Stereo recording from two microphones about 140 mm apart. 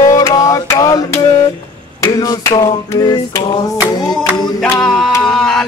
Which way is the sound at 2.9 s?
25° left (ahead or behind).